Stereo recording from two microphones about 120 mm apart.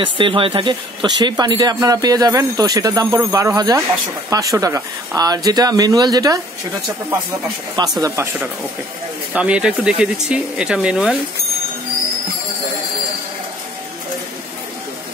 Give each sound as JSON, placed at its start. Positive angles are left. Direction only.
{"t": 0.0, "sound": "speech", "side_deg": -45}
{"t": 7.8, "sound": "speech", "side_deg": -40}
{"t": 9.3, "sound": "speech", "side_deg": -10}